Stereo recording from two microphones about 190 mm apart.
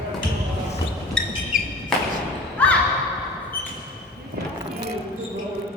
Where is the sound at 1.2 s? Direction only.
5° left (ahead or behind).